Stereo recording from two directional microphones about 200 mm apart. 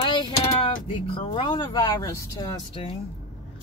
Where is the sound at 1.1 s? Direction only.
25° left (ahead or behind).